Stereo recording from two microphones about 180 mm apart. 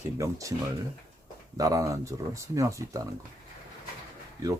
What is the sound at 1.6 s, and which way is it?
Speech, 20° right (ahead or behind).